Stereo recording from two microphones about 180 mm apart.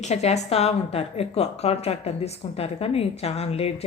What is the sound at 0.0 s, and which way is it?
A woman's voice, 40° left (ahead or behind).